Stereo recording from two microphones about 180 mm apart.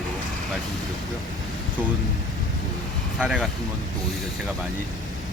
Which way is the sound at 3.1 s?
5° right (ahead or behind).